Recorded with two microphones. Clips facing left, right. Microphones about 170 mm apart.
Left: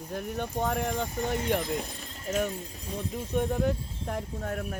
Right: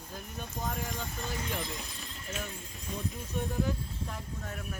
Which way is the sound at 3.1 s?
60° left (ahead or behind).